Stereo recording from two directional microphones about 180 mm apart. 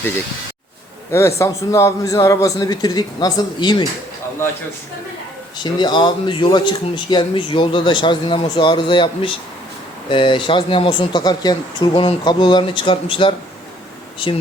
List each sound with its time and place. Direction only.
1.4 s speech: 15° left (ahead or behind)
5.8 s speech: 25° left (ahead or behind)